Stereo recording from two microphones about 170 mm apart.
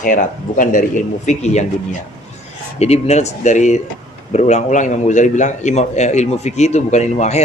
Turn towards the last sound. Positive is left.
turn(degrees=40)  # may be behind; listen again after turning